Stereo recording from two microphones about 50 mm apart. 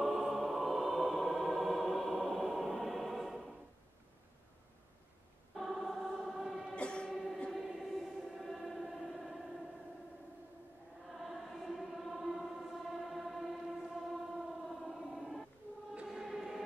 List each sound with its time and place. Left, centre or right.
0.0 s music: centre
5.6 s choir: centre
6.7 s music: centre
7.5 s music: centre
11.1 s choir: centre
14.7 s a sound: centre